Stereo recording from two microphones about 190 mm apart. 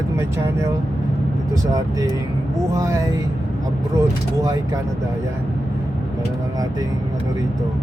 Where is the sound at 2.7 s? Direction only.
15° right (ahead or behind).